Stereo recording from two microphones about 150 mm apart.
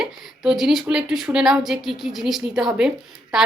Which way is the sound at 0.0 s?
Centre (ahead or behind).